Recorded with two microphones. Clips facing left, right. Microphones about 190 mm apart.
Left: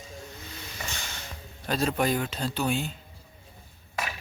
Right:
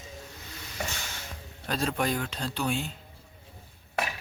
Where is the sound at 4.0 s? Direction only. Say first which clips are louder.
Right 2 dB; 60° right (ahead or behind).